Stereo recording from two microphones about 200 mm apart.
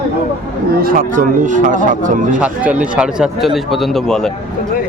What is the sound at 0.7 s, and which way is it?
Speech, 45° right (ahead or behind).